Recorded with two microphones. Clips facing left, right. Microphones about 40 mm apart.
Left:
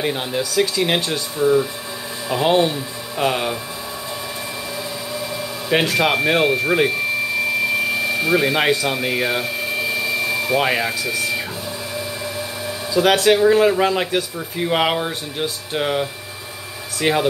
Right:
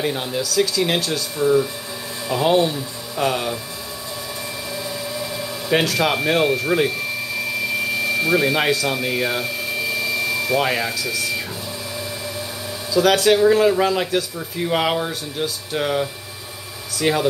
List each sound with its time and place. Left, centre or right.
0.0 s speech: centre
5.2 s speech: centre
7.9 s a sound: centre
12.9 s speech: centre